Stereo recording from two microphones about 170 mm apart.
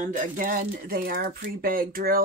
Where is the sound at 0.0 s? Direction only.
45° right (ahead or behind).